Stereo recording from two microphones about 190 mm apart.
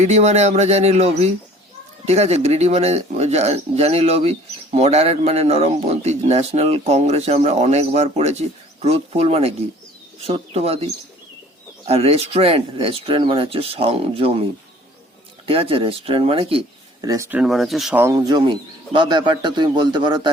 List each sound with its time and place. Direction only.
0.0 s speech: 35° right (ahead or behind)
11.9 s speech: 30° right (ahead or behind)
15.4 s speech: 30° right (ahead or behind)
17.1 s speech: 10° right (ahead or behind)
18.0 s speech: 20° right (ahead or behind)